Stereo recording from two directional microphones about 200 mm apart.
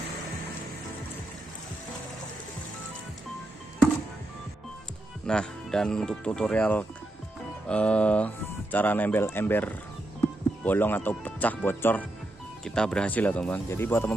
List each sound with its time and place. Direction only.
5.2 s speech: 5° left (ahead or behind)